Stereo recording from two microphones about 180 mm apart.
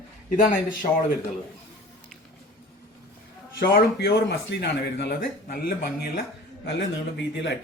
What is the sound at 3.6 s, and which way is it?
Speech, 60° left (ahead or behind).